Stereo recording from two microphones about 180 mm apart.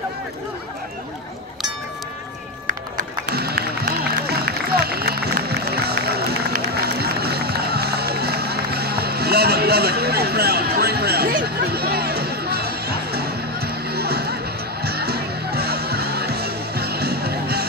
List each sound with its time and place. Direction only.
3.0 s music: 60° right (ahead or behind)